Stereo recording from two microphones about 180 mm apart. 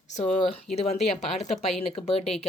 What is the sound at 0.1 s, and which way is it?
Speech, 35° left (ahead or behind).